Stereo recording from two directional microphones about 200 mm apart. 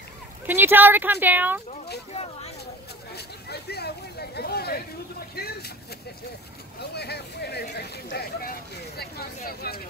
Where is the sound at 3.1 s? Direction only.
55° left (ahead or behind).